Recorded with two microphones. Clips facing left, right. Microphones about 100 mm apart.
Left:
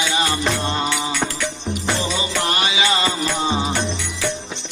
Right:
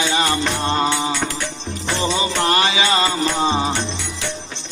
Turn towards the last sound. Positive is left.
turn(degrees=-30)  # may be behind; listen again after turning